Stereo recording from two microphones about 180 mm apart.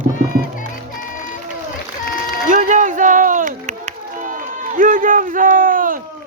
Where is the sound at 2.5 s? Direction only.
45° right (ahead or behind).